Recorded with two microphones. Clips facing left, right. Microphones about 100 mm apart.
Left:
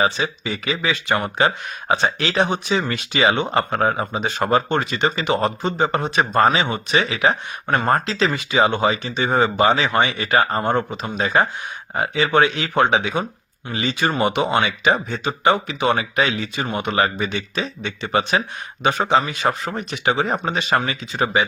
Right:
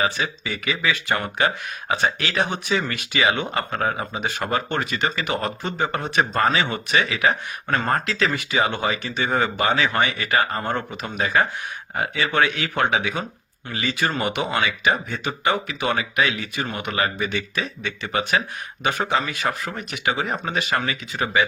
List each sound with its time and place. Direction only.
0.0 s speech: 25° left (ahead or behind)